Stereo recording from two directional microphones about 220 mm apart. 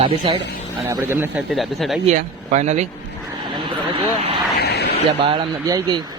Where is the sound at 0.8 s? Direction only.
10° right (ahead or behind).